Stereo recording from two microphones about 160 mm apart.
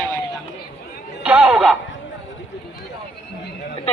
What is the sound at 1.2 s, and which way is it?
Music, 5° right (ahead or behind).